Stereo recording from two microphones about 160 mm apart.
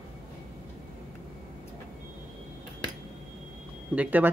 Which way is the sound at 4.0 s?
10° right (ahead or behind).